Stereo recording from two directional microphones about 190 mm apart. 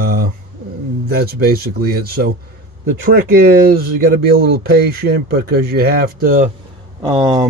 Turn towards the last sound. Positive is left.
turn(degrees=-25)  # may be behind; listen again after turning